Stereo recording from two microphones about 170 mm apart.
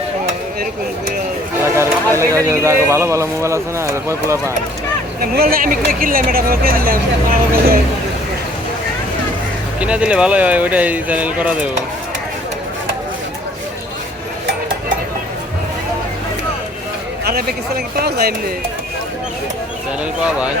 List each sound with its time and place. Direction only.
1.6 s a sound: 15° right (ahead or behind)
2.1 s a man's voice: 15° right (ahead or behind)
5.2 s speech: 60° right (ahead or behind)
9.8 s a man's voice: 5° right (ahead or behind)
17.2 s speech: 65° right (ahead or behind)